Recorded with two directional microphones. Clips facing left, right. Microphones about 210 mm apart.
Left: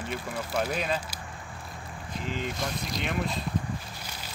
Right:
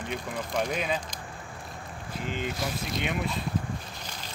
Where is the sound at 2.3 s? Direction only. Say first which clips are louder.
Even; centre (ahead or behind).